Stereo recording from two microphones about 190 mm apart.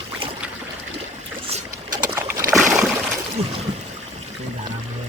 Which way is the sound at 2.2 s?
10° right (ahead or behind).